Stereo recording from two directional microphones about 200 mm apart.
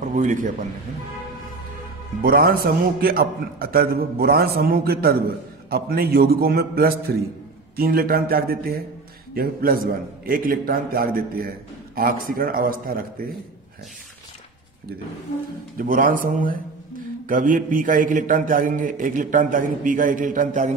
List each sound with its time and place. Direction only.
0.1 s a man's voice: 40° right (ahead or behind)
2.2 s a man's voice: 50° right (ahead or behind)
15.8 s a man's voice: 45° right (ahead or behind)